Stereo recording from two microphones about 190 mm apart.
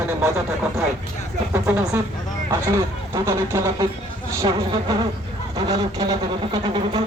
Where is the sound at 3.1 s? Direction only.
15° right (ahead or behind).